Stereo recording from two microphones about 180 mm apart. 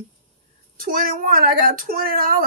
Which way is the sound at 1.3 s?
50° right (ahead or behind).